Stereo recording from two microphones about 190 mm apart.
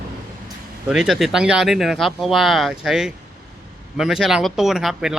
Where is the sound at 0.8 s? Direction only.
5° right (ahead or behind).